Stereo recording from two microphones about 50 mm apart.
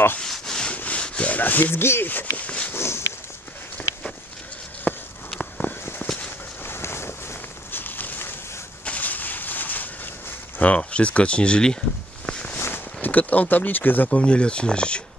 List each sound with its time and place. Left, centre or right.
0.2 s rub: centre
0.7 s rub: left
1.0 s speech: left
2.0 s speech: left
2.7 s walk: left
4.9 s a sound: left
6.6 s vehicle: left
7.7 s walk: left
8.8 s a sound: left
10.8 s speech: left
12.3 s walk: left
12.5 s a sound: left
13.0 s speech: left
14.1 s speech: left